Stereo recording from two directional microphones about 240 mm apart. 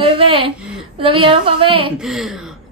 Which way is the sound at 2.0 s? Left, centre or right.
Centre.